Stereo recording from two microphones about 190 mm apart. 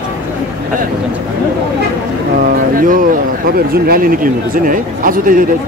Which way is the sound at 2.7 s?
45° right (ahead or behind).